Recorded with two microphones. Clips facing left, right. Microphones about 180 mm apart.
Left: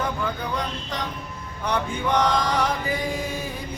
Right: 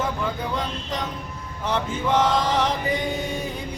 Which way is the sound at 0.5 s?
Centre (ahead or behind).